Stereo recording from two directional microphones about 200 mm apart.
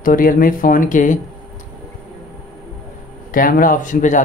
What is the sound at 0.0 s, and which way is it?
Speech, 45° left (ahead or behind).